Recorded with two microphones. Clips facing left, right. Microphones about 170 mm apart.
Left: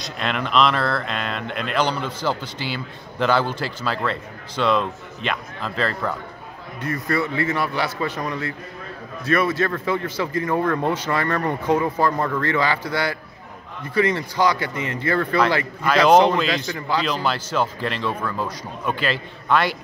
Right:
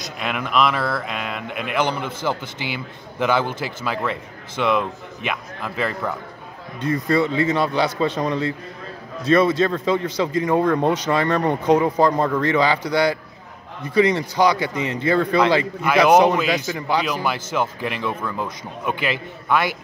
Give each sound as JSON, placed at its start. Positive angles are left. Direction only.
{"t": 0.2, "sound": "a man's voice", "side_deg": -10}